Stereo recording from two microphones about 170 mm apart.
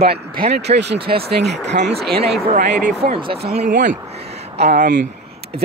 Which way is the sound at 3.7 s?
50° right (ahead or behind).